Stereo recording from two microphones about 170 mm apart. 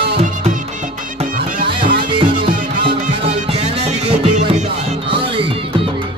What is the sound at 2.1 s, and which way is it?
Music, 30° right (ahead or behind).